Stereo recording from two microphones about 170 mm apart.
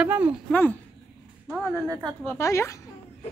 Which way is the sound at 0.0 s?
10° right (ahead or behind).